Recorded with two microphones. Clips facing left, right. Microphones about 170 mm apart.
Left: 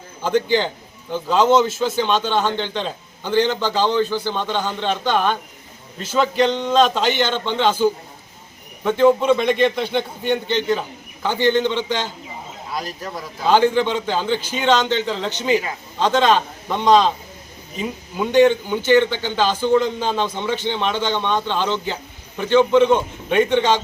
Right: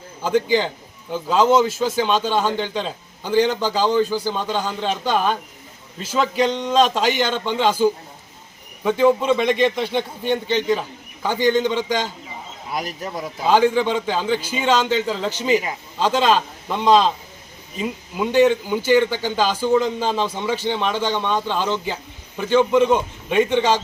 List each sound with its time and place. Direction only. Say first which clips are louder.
0.2 s a man's voice: even; 5° right (ahead or behind)
9.4 s a man's voice: left 1 dB; 5° left (ahead or behind)
12.7 s speech: right 1 dB; 20° right (ahead or behind)
13.4 s a man's voice: left 1 dB; 5° right (ahead or behind)